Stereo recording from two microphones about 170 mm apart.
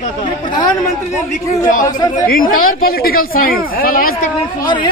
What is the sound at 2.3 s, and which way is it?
Speech, 55° left (ahead or behind).